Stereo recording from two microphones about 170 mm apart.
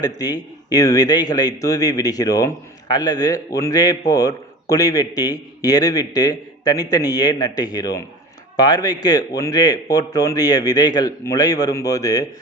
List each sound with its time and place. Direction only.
0.0 s a man's voice: 20° left (ahead or behind)